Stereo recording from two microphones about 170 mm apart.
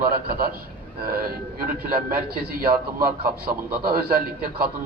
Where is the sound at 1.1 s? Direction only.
60° right (ahead or behind).